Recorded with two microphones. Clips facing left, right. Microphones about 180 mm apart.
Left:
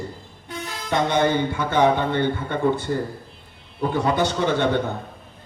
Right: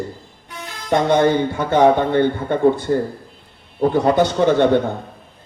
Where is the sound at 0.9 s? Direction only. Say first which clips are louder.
Right 5 dB; 50° right (ahead or behind).